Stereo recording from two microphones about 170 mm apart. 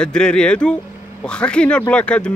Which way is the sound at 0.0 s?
5° left (ahead or behind).